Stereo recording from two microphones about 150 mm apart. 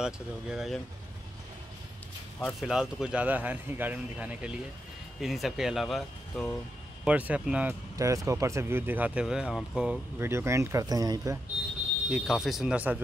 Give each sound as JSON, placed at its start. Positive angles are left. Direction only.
{"t": 0.0, "sound": "speech", "side_deg": -5}
{"t": 2.4, "sound": "speech", "side_deg": 0}
{"t": 7.1, "sound": "speech", "side_deg": -10}
{"t": 7.9, "sound": "speech", "side_deg": -20}
{"t": 12.1, "sound": "speech", "side_deg": 0}